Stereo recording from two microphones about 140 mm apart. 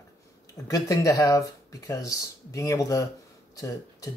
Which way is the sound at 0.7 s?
25° left (ahead or behind).